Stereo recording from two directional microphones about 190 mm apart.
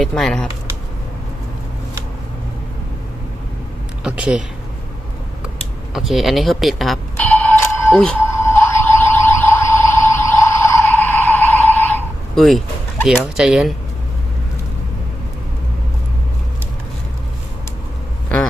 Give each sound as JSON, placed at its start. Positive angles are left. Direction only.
{"t": 0.0, "sound": "speech", "side_deg": 5}
{"t": 4.0, "sound": "speech", "side_deg": -5}
{"t": 5.9, "sound": "doorbell", "side_deg": 0}
{"t": 7.9, "sound": "music", "side_deg": 5}
{"t": 13.3, "sound": "speech", "side_deg": -5}